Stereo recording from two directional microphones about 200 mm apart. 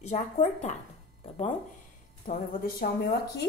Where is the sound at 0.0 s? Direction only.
35° left (ahead or behind).